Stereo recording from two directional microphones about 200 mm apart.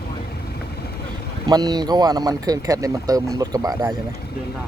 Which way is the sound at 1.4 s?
20° right (ahead or behind).